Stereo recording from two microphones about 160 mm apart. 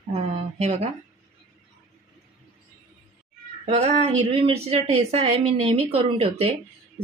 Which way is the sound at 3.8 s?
40° right (ahead or behind).